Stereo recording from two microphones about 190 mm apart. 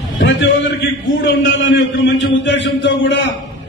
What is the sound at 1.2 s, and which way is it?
A man's voice, 70° left (ahead or behind).